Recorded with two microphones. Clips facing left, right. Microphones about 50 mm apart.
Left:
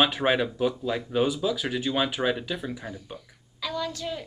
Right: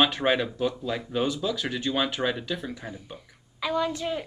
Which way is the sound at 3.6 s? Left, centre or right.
Right.